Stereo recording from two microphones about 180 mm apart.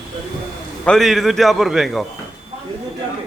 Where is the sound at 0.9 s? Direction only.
Centre (ahead or behind).